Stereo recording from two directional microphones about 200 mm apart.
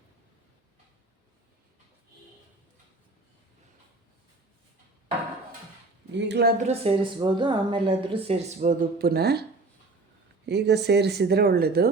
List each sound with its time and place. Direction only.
6.1 s speech: 60° right (ahead or behind)
6.6 s a woman's voice: 30° right (ahead or behind); by 9.4 s 55° right (ahead or behind)
10.4 s speech: 55° right (ahead or behind)